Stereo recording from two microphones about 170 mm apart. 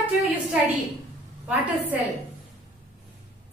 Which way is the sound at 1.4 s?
10° right (ahead or behind).